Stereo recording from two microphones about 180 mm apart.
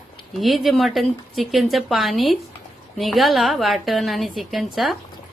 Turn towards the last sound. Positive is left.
turn(degrees=0)  # may be behind; listen again after turning